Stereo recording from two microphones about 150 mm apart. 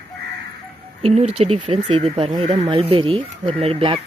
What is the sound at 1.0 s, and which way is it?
Speech, 45° right (ahead or behind).